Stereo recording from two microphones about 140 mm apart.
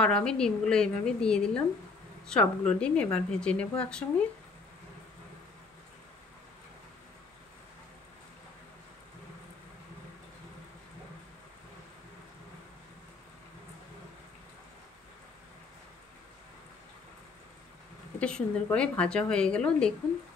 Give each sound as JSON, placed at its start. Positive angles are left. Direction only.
{"t": 0.0, "sound": "a woman's voice", "side_deg": 5}
{"t": 18.2, "sound": "speech", "side_deg": 5}